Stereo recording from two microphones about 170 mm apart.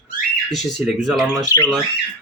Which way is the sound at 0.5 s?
Centre (ahead or behind).